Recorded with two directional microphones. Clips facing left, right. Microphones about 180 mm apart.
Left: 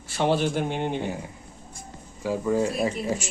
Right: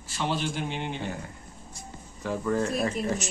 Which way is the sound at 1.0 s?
15° left (ahead or behind).